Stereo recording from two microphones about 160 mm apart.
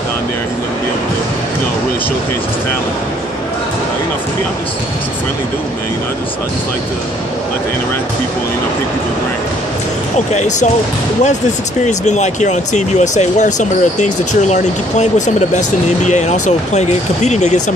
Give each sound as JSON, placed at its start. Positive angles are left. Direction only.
{"t": 10.1, "sound": "speech", "side_deg": 45}
{"t": 11.8, "sound": "speech", "side_deg": 45}